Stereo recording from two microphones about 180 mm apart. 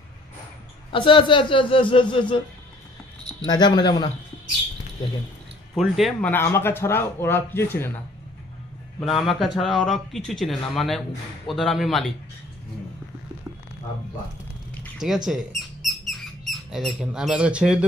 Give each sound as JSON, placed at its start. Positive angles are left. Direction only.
{"t": 0.9, "sound": "a man's voice", "side_deg": 30}
{"t": 5.8, "sound": "speech", "side_deg": 0}
{"t": 6.3, "sound": "speech", "side_deg": 15}
{"t": 9.0, "sound": "speech", "side_deg": 0}
{"t": 15.2, "sound": "mouse", "side_deg": 0}